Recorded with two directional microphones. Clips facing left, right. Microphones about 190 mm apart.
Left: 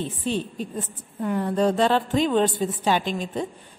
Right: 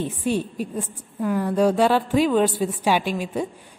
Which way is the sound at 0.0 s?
10° right (ahead or behind).